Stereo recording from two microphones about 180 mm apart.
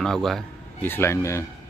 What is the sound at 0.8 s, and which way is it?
Speech, 15° left (ahead or behind).